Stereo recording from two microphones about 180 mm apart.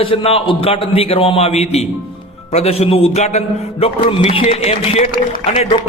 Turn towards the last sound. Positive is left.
turn(degrees=30)  # may be behind; listen again after turning